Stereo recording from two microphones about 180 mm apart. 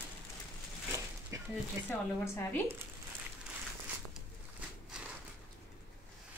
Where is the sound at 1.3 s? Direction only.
15° right (ahead or behind).